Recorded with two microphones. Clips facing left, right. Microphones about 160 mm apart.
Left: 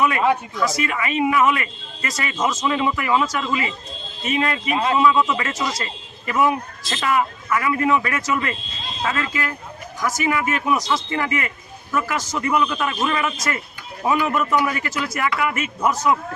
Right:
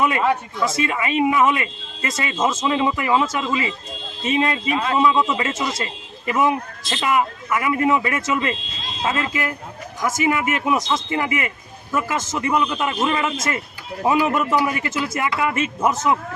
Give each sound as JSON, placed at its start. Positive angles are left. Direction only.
{"t": 0.5, "sound": "speech", "side_deg": -25}
{"t": 4.7, "sound": "a man's voice", "side_deg": 25}
{"t": 4.9, "sound": "speech", "side_deg": -25}